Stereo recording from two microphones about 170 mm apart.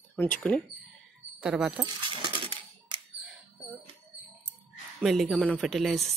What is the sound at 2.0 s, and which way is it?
Coin, 30° right (ahead or behind).